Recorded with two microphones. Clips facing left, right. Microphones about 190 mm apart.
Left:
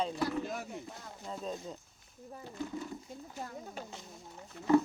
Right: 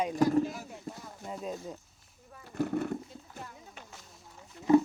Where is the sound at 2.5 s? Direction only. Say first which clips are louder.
Right 9 dB; 65° right (ahead or behind).